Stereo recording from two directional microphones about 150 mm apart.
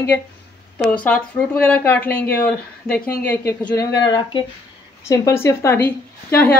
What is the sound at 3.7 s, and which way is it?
Speech, 25° left (ahead or behind).